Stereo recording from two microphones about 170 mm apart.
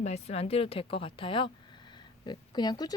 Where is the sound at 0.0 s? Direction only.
40° left (ahead or behind).